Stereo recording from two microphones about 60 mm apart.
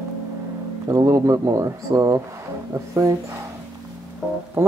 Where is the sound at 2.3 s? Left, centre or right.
Right.